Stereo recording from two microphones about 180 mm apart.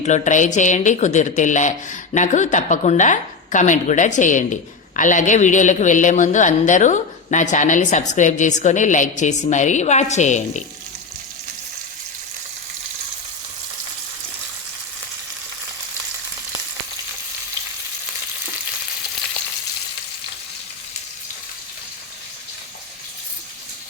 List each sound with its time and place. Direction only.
0.0 s a man's voice: 40° left (ahead or behind)